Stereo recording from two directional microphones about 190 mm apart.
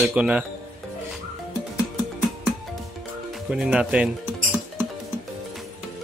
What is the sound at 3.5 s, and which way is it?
Speech, 5° right (ahead or behind).